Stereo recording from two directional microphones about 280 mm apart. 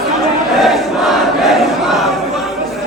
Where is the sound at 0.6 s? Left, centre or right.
Centre.